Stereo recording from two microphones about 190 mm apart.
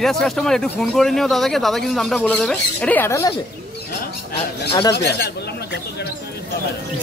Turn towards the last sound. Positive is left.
turn(degrees=60)  # may be behind; listen again after turning